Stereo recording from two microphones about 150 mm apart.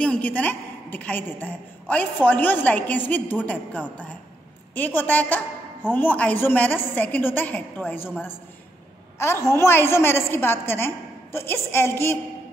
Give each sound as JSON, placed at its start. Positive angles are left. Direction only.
{"t": 0.0, "sound": "a woman's voice", "side_deg": 10}